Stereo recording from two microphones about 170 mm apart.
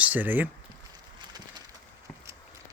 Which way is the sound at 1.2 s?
25° right (ahead or behind).